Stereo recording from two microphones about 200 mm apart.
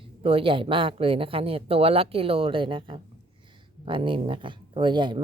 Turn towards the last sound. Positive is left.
turn(degrees=-25)  # may be behind; listen again after turning